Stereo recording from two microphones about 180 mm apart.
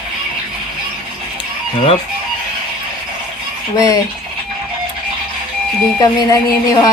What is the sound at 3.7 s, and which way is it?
Speech, 20° left (ahead or behind).